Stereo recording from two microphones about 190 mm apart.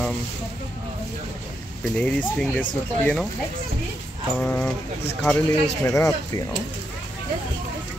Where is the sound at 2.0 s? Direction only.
5° left (ahead or behind).